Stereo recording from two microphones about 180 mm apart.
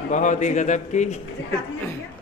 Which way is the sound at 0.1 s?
45° left (ahead or behind).